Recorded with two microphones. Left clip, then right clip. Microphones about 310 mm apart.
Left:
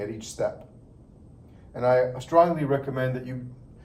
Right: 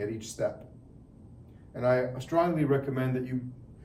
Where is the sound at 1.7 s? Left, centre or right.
Centre.